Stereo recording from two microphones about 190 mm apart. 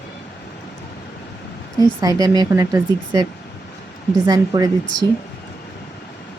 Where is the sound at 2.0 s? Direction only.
20° right (ahead or behind).